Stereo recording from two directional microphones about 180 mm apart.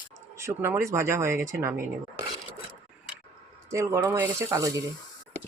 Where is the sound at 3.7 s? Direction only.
15° right (ahead or behind).